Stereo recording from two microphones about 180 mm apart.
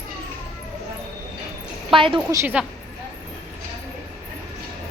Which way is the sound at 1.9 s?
30° right (ahead or behind).